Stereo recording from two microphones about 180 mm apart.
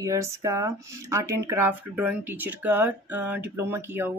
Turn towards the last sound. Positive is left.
turn(degrees=-10)  # may be behind; listen again after turning